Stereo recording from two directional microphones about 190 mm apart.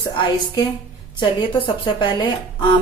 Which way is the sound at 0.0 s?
20° left (ahead or behind).